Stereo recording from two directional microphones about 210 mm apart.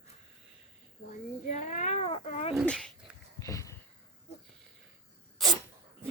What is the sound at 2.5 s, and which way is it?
Cat, 5° left (ahead or behind).